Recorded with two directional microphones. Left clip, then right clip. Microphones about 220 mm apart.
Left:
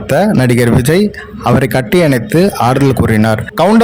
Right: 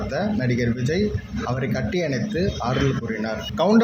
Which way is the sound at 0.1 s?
50° left (ahead or behind).